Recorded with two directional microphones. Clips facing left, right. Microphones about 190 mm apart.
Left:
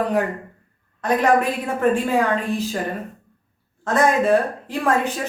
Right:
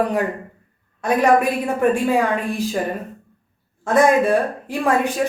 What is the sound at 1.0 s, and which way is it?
Speech, 10° right (ahead or behind).